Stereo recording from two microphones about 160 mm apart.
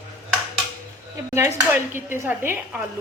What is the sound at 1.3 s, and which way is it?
Speech, 15° right (ahead or behind).